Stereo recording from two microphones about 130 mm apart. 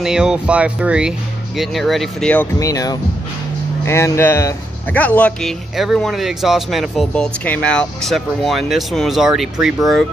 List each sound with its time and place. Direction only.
0.0 s speech: 5° right (ahead or behind)
2.6 s speech: 25° left (ahead or behind); by 10.0 s centre (ahead or behind)